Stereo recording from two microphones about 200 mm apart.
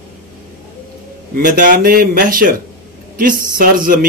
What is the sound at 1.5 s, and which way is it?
Speech, 45° right (ahead or behind).